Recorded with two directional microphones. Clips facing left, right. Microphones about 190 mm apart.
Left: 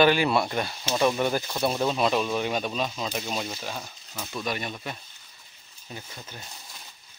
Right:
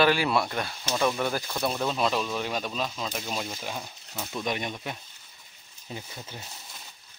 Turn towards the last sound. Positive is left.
turn(degrees=-20)  # may be behind; listen again after turning